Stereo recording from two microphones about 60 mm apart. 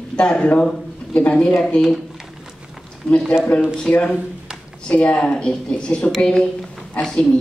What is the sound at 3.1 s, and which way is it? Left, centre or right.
Speech, centre.